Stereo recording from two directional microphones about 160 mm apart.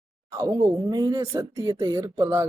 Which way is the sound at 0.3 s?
20° right (ahead or behind).